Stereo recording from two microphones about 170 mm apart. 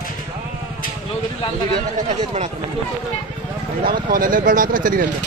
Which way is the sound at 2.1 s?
40° right (ahead or behind).